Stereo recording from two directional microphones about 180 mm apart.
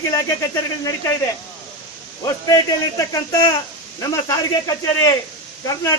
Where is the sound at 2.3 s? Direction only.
20° left (ahead or behind).